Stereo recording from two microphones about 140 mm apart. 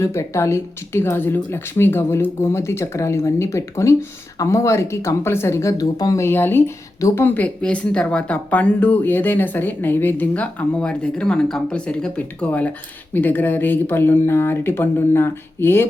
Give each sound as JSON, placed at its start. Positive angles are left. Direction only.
{"t": 0.0, "sound": "speech", "side_deg": 20}